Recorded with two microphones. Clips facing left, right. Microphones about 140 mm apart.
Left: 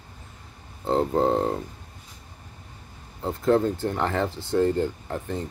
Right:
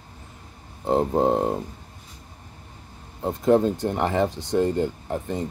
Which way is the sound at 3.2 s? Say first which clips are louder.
Right 2 dB; 15° right (ahead or behind).